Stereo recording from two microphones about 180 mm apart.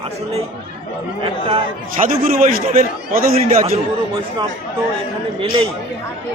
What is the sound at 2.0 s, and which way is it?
A man's voice, 50° right (ahead or behind).